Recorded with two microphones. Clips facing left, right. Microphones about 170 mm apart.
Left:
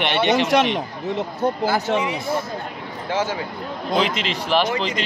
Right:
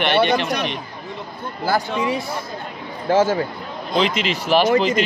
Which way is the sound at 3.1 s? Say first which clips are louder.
Right 7 dB; 45° right (ahead or behind).